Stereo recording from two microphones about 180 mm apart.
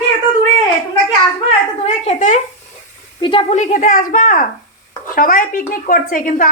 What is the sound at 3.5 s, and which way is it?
A woman's voice, 40° left (ahead or behind).